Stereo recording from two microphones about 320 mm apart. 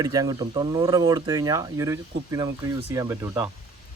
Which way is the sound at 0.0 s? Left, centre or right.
Centre.